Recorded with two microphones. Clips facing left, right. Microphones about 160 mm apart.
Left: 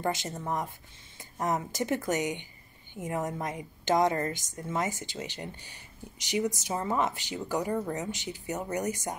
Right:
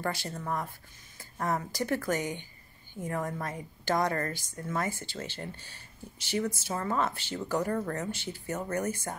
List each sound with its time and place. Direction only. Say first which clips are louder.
0.0 s a woman's voice: left 2 dB; 20° left (ahead or behind)